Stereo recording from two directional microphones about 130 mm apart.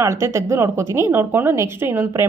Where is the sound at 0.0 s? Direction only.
20° right (ahead or behind).